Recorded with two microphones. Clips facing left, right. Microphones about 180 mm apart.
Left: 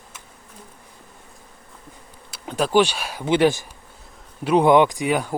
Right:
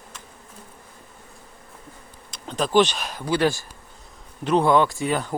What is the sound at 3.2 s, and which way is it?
Speech, 20° left (ahead or behind).